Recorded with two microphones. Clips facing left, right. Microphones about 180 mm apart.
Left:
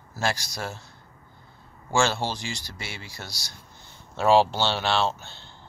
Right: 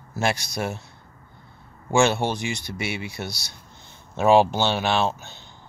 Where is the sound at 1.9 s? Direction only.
20° right (ahead or behind).